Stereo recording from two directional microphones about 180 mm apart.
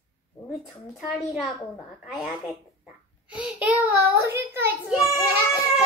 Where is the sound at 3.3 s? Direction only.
5° right (ahead or behind).